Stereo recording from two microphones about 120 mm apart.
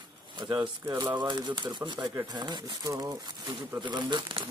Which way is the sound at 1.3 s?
35° right (ahead or behind).